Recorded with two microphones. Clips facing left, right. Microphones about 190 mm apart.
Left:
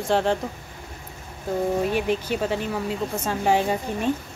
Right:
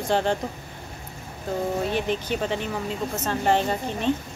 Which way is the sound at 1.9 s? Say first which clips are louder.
Left 2 dB; 5° left (ahead or behind).